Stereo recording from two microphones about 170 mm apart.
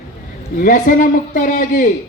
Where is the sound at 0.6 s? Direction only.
50° left (ahead or behind).